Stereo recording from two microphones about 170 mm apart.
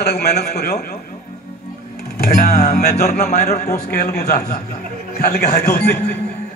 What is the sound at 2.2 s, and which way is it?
Music, 65° left (ahead or behind).